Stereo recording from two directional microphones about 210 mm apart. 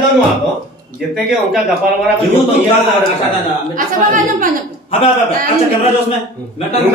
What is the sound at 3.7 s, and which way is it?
Speech, 40° right (ahead or behind).